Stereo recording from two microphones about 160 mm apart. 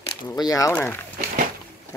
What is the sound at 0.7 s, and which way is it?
Speech, 10° left (ahead or behind).